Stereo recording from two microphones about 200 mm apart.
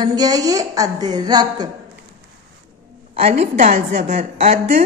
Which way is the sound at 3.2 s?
30° right (ahead or behind).